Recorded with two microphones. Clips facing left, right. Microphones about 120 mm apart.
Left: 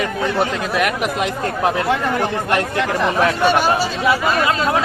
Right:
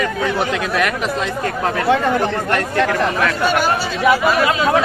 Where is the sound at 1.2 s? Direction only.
15° left (ahead or behind).